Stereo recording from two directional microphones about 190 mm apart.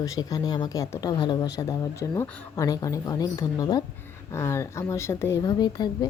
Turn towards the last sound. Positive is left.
turn(degrees=20)  # may be behind; listen again after turning